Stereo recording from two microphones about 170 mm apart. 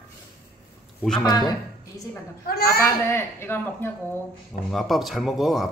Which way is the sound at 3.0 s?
15° left (ahead or behind).